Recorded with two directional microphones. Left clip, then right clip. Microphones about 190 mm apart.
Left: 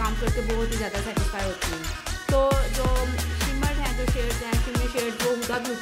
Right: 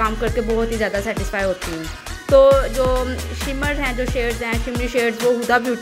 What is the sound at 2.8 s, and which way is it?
Music, 15° right (ahead or behind).